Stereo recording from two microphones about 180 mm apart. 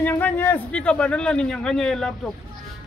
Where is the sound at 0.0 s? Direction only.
10° left (ahead or behind).